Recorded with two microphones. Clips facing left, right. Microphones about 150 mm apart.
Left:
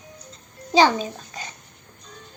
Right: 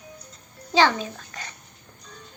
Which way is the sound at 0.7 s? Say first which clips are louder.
Left 3 dB; 15° left (ahead or behind).